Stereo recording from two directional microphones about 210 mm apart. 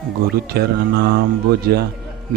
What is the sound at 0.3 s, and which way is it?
Speech, 50° right (ahead or behind).